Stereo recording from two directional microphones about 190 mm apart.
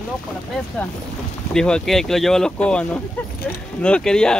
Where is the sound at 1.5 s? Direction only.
5° left (ahead or behind).